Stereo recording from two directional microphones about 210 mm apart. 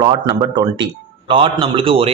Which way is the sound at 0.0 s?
20° right (ahead or behind).